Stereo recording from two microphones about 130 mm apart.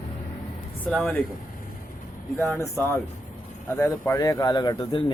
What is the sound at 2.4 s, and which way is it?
Speech, 20° left (ahead or behind).